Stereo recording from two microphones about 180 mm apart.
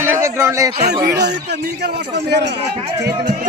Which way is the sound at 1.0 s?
70° right (ahead or behind).